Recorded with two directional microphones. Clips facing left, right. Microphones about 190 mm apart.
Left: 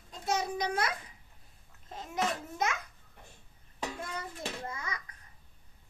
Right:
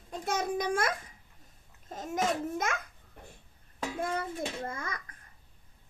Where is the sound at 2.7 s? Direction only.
50° right (ahead or behind).